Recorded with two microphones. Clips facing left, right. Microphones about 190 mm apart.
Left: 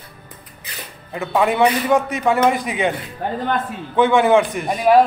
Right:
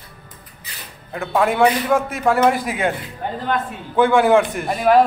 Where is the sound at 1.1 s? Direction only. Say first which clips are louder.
Left 1 dB; centre (ahead or behind).